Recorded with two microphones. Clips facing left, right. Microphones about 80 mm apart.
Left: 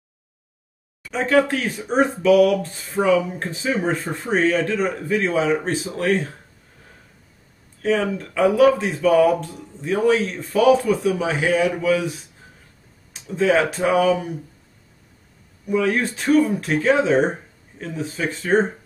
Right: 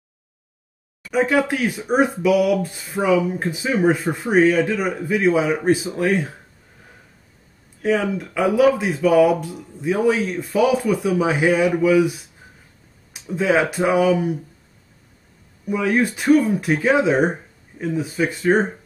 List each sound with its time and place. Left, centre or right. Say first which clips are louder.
1.1 s a man's voice: even; centre
7.8 s a man's voice: right 1 dB; centre
15.7 s a man's voice: right 1 dB; centre